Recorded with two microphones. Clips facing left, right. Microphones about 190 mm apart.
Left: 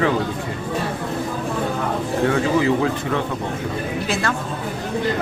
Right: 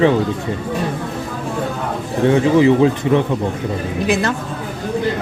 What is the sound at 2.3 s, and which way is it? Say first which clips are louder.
Speech: right 8 dB; 20° right (ahead or behind).